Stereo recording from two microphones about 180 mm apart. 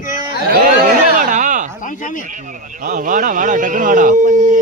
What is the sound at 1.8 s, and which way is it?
Speech, 45° left (ahead or behind).